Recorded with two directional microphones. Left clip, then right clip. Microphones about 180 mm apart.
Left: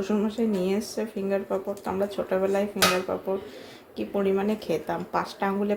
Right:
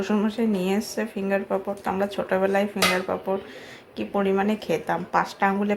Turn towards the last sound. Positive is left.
turn(degrees=5)  # may be behind; listen again after turning